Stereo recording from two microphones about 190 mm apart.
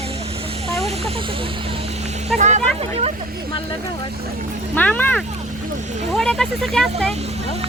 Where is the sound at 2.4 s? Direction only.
40° right (ahead or behind).